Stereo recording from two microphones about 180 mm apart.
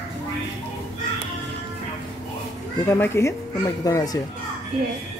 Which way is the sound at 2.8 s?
15° left (ahead or behind).